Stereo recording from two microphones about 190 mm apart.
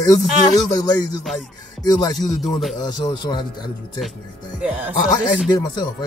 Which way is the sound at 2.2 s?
Centre (ahead or behind).